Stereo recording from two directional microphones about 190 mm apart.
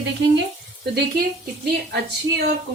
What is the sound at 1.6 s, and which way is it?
Speech, 60° right (ahead or behind).